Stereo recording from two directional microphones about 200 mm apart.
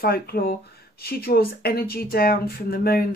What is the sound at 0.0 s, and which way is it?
Speech, 50° left (ahead or behind).